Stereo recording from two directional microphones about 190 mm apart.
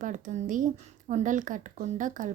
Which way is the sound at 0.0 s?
40° right (ahead or behind).